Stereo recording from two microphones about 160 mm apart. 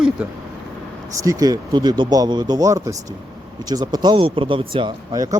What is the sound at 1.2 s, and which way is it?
Speech, 20° right (ahead or behind).